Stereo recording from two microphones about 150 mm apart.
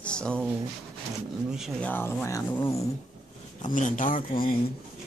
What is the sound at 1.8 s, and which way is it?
Speech, 15° left (ahead or behind).